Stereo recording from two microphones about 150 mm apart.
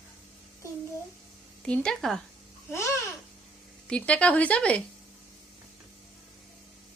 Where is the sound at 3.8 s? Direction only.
5° left (ahead or behind).